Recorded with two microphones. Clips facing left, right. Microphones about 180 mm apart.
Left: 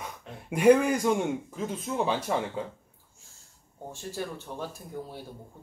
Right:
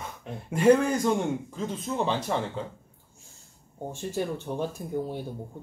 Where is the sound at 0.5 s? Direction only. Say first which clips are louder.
Even; 15° left (ahead or behind).